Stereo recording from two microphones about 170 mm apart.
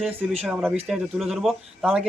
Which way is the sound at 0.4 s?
Centre (ahead or behind).